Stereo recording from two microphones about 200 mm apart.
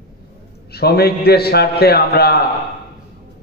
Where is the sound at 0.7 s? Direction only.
55° left (ahead or behind).